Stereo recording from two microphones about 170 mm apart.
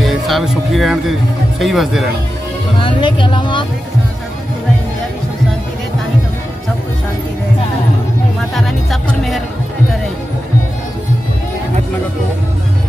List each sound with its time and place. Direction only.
0.0 s speech: centre (ahead or behind)
2.8 s speech: 25° left (ahead or behind)
8.5 s music: centre (ahead or behind)